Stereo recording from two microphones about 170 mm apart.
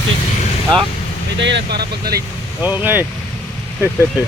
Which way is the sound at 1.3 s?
90° right.